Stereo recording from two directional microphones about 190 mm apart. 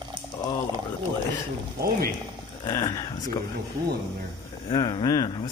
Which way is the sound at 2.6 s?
20° left (ahead or behind).